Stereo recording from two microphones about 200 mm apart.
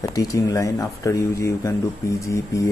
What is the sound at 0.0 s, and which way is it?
Speech, 15° left (ahead or behind).